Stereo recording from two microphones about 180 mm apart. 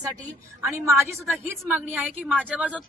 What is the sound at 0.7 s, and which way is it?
A woman's voice, 15° right (ahead or behind).